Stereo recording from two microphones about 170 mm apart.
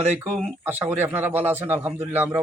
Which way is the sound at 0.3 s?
40° right (ahead or behind).